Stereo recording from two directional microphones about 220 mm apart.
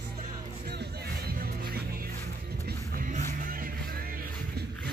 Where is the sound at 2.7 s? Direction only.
40° right (ahead or behind).